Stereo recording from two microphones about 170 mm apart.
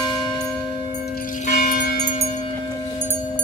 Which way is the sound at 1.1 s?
55° left (ahead or behind).